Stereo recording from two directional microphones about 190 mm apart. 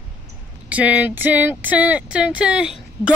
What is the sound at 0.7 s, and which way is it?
Speech, 5° right (ahead or behind).